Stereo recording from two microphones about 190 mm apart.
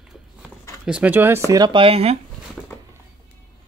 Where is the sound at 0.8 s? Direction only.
5° right (ahead or behind).